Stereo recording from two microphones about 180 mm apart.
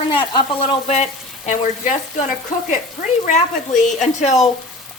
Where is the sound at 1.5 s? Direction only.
40° left (ahead or behind).